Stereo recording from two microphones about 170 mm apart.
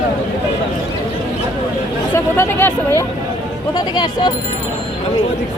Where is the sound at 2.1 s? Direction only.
15° left (ahead or behind).